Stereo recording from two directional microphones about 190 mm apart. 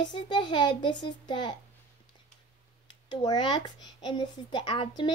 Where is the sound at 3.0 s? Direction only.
25° left (ahead or behind).